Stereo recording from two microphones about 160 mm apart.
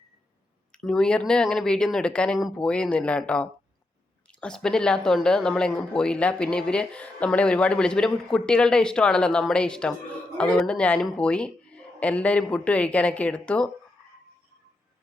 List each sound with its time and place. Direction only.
0.7 s speech: 5° left (ahead or behind)